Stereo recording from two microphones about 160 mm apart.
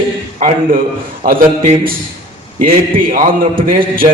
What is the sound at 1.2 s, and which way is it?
Speech, 60° right (ahead or behind).